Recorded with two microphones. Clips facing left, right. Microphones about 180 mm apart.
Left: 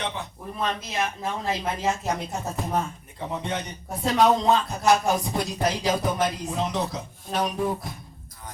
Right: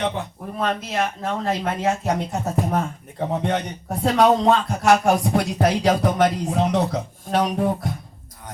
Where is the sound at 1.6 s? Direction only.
65° right (ahead or behind).